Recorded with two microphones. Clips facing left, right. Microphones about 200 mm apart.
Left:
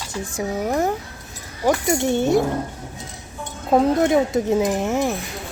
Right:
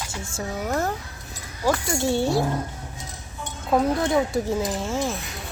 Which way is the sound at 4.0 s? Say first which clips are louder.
Left 5 dB; 20° left (ahead or behind).